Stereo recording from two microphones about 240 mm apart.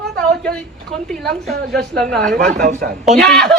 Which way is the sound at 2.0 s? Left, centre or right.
Centre.